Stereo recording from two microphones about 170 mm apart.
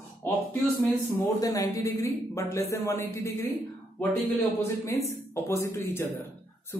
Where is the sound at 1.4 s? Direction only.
20° left (ahead or behind).